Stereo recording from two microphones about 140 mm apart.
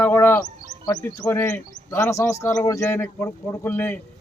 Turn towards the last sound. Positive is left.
turn(degrees=15)  # may be behind; listen again after turning